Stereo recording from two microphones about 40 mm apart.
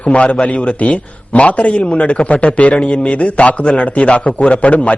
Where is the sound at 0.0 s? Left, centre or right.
Left.